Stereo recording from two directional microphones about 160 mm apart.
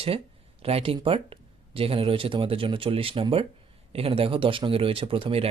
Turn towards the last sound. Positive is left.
turn(degrees=-35)  # may be behind; listen again after turning